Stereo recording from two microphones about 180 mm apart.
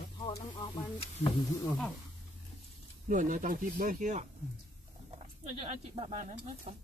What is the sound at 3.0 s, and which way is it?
Speech, 50° right (ahead or behind).